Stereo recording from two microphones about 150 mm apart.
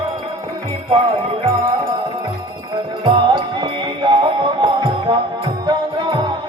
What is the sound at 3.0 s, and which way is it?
Music, 30° right (ahead or behind).